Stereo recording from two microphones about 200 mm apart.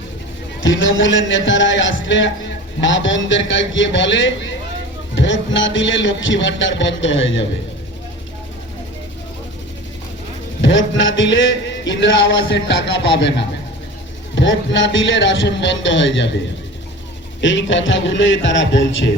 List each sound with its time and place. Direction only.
0.6 s speech: 70° left (ahead or behind)
10.6 s speech: 70° left (ahead or behind)
17.4 s speech: 65° left (ahead or behind)